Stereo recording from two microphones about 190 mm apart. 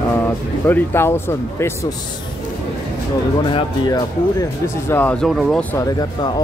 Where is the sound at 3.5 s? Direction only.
25° left (ahead or behind).